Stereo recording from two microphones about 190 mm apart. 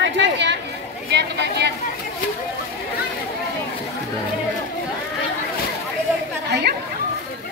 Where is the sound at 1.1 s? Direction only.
65° right (ahead or behind).